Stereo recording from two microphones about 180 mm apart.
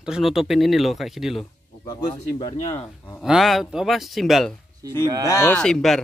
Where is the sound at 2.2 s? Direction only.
30° left (ahead or behind).